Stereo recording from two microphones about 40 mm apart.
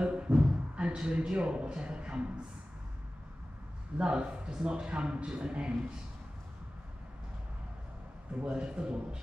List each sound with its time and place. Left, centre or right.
0.0 s speech: right
4.0 s a man's voice: right
8.4 s a man's voice: right